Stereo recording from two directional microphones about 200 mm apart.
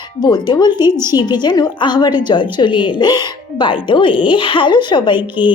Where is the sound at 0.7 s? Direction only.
15° right (ahead or behind).